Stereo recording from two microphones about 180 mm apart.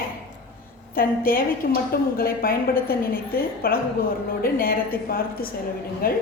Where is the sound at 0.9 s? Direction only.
55° left (ahead or behind).